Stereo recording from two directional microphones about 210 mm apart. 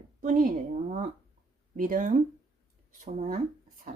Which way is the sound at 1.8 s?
40° right (ahead or behind).